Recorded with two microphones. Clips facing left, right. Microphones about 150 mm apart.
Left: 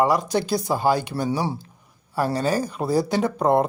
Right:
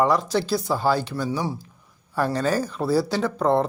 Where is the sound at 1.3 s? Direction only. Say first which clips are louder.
Left 2 dB; 30° left (ahead or behind).